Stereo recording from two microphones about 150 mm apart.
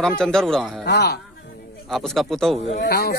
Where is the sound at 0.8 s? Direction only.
90° left.